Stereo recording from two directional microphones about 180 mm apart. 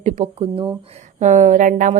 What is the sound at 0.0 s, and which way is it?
Speech, 35° right (ahead or behind).